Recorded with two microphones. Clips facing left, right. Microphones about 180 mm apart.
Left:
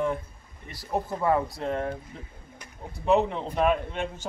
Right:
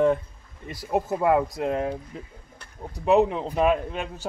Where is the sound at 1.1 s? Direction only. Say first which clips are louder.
Right 3 dB; 15° right (ahead or behind).